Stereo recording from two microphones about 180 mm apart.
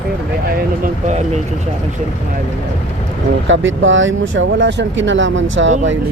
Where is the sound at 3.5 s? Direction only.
90° right.